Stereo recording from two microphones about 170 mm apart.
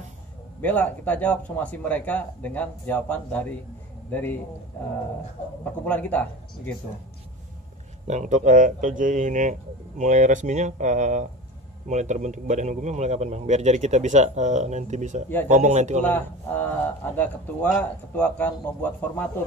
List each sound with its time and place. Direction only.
0.6 s speech: 10° left (ahead or behind)
5.6 s speech: 10° left (ahead or behind)
8.1 s a man's voice: 45° right (ahead or behind)
16.0 s speech: 10° left (ahead or behind)